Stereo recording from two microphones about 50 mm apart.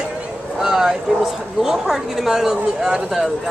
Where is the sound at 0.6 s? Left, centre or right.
Centre.